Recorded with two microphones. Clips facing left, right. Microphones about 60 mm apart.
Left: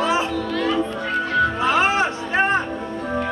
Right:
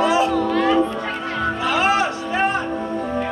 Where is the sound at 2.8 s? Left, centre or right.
Centre.